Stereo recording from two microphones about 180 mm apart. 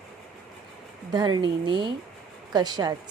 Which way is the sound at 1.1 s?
25° right (ahead or behind).